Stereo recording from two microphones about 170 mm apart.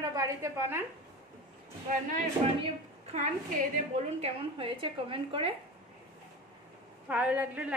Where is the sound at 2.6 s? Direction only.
40° right (ahead or behind).